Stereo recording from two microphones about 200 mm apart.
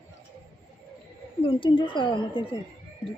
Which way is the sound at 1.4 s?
25° left (ahead or behind).